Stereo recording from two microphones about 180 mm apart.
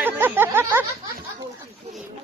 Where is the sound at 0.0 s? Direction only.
10° right (ahead or behind).